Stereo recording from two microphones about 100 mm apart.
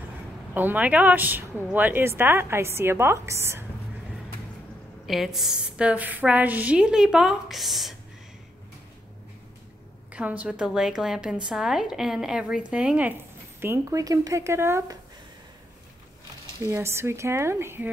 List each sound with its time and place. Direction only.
0.6 s a woman's voice: 15° right (ahead or behind)
5.0 s a woman's voice: centre (ahead or behind)
10.1 s a woman's voice: 15° right (ahead or behind)
13.6 s speech: 30° right (ahead or behind)
16.7 s a woman's voice: 25° right (ahead or behind)